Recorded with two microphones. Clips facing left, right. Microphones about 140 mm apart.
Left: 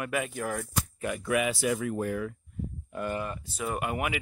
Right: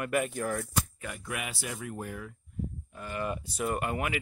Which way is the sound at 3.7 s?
10° left (ahead or behind).